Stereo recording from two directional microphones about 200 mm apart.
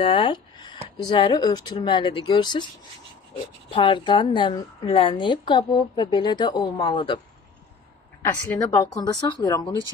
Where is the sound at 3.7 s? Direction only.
25° left (ahead or behind).